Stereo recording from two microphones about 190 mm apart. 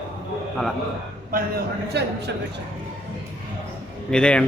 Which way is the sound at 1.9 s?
60° right (ahead or behind).